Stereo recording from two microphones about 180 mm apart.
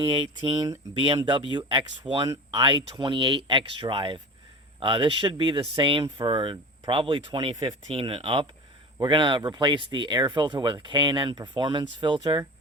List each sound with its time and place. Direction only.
0.0 s speech: 25° right (ahead or behind)